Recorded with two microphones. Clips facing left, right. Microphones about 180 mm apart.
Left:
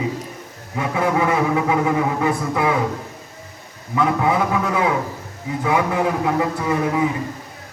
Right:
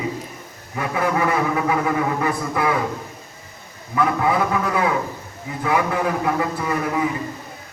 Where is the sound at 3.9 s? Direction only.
20° left (ahead or behind).